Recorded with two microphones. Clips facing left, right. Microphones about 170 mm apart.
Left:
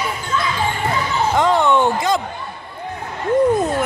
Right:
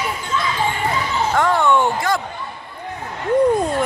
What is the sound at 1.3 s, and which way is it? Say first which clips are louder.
Speech: left 1 dB; 20° left (ahead or behind).